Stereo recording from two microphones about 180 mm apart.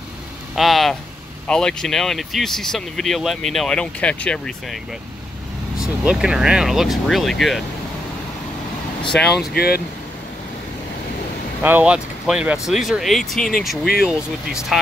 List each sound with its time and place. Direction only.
0.6 s speech: centre (ahead or behind)
5.8 s speech: 5° right (ahead or behind)
9.1 s speech: 5° left (ahead or behind)
9.5 s speech: 60° left (ahead or behind)
11.6 s speech: 10° right (ahead or behind)